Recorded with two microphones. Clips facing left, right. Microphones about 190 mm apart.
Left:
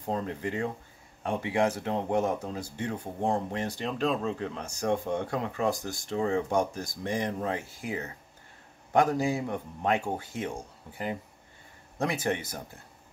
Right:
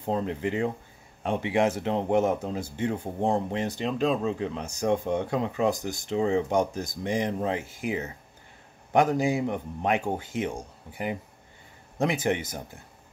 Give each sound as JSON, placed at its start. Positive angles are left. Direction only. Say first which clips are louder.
{"t": 0.0, "sound": "speech", "louder": "right 4 dB", "side_deg": -20}